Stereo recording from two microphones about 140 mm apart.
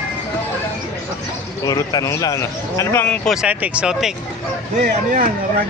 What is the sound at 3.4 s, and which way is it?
Speech, 10° right (ahead or behind).